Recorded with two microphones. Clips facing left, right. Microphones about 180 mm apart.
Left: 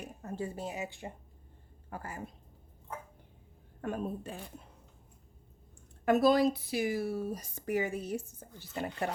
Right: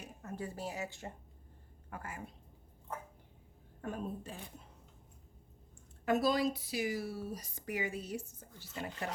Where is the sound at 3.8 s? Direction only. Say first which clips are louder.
Left 4 dB; 65° left (ahead or behind).